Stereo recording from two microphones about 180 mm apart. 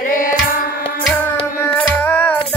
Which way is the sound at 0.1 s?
50° left (ahead or behind).